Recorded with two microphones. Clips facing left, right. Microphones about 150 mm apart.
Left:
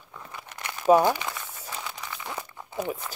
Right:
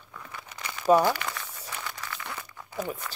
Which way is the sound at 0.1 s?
15° left (ahead or behind).